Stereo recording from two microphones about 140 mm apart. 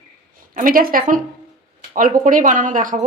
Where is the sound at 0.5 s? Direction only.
85° right.